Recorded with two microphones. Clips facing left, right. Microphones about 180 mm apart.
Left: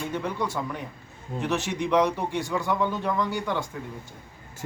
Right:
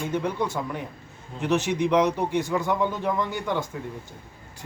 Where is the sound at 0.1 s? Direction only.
15° right (ahead or behind).